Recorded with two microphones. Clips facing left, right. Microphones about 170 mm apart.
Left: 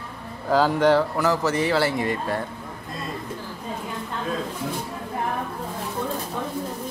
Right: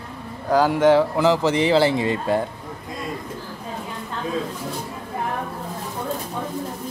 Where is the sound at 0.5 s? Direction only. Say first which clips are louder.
Right 2 dB; 10° right (ahead or behind); by 2.4 s 25° right (ahead or behind).